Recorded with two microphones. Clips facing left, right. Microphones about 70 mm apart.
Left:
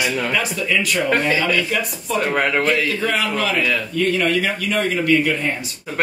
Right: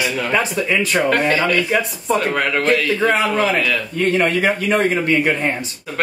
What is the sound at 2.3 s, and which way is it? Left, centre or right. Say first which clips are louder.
Speech: even; centre.